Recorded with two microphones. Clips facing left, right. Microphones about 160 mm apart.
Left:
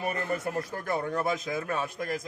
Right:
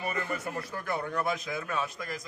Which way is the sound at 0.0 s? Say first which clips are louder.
Left 3 dB; 50° left (ahead or behind).